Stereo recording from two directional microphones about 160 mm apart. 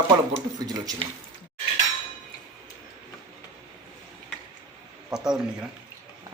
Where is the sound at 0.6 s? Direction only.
25° right (ahead or behind).